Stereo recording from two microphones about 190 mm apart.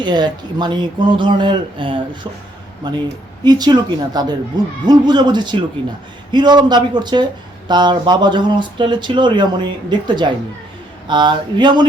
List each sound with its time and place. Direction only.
0.0 s speech: 25° right (ahead or behind)